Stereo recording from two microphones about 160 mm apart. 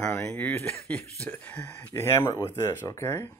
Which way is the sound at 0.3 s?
15° left (ahead or behind).